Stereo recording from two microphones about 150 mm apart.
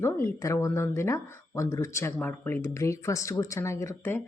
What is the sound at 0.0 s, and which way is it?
Speech, 20° left (ahead or behind).